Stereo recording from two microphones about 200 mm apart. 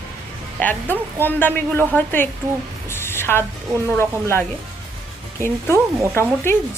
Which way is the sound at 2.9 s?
10° left (ahead or behind).